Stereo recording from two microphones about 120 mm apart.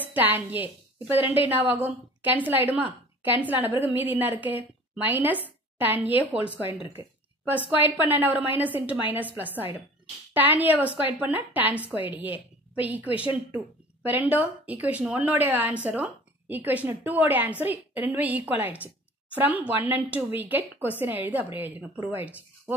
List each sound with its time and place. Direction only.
0.1 s speech: 15° right (ahead or behind)
7.7 s speech: 15° right (ahead or behind)